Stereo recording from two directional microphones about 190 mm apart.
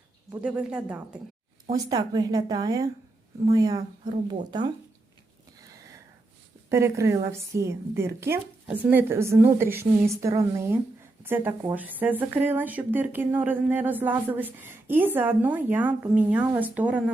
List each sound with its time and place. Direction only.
0.3 s speech: 10° right (ahead or behind)
1.7 s speech: 20° right (ahead or behind)
5.5 s a sound: 20° right (ahead or behind)
6.7 s speech: 15° right (ahead or behind)